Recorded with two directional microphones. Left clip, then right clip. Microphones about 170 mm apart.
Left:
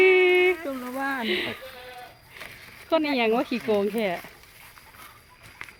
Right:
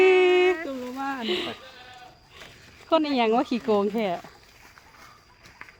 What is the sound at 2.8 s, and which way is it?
Speech, 20° right (ahead or behind).